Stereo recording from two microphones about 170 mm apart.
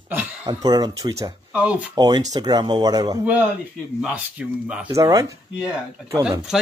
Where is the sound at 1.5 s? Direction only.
5° right (ahead or behind).